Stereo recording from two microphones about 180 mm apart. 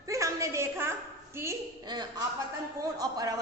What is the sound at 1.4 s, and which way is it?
A woman's voice, 20° right (ahead or behind).